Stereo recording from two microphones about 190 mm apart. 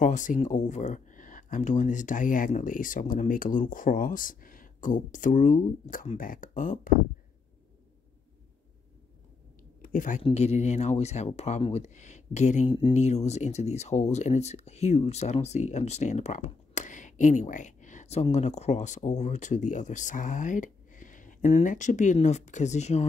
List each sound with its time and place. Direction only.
0.0 s speech: 40° left (ahead or behind)
9.8 s a sound: 45° left (ahead or behind)
10.2 s speech: 35° left (ahead or behind)